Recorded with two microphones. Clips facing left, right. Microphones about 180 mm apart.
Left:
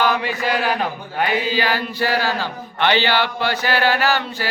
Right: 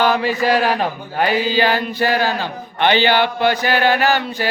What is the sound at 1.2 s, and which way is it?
Speech, 25° right (ahead or behind).